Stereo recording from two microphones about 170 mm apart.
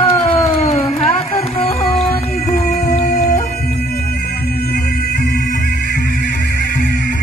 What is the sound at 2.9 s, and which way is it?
Music, 45° left (ahead or behind).